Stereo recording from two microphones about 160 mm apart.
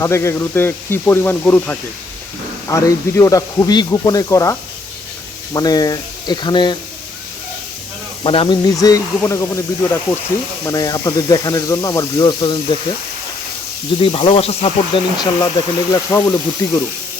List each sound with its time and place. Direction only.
0.0 s speech: 15° left (ahead or behind)
2.6 s speech: 20° left (ahead or behind)
5.5 s speech: 25° left (ahead or behind)
8.2 s speech: 35° left (ahead or behind)
8.6 s speech: 20° left (ahead or behind)
14.0 s speech: 35° left (ahead or behind)
15.2 s speech: 25° left (ahead or behind)